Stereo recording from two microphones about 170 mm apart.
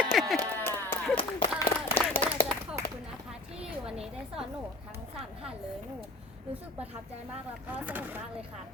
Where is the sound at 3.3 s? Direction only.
5° right (ahead or behind).